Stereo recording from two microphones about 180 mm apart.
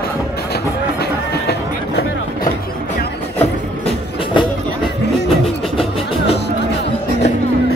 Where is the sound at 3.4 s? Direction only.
30° left (ahead or behind).